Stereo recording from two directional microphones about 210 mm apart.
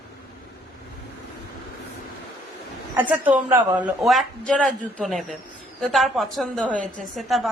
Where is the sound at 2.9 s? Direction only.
10° right (ahead or behind).